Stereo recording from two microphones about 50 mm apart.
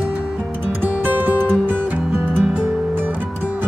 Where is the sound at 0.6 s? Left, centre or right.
Right.